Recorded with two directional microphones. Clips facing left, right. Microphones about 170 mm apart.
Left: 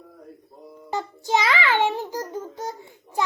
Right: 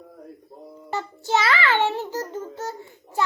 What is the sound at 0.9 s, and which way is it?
A child's voice, 15° left (ahead or behind).